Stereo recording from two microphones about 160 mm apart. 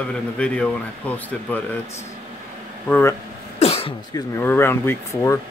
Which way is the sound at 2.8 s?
10° left (ahead or behind).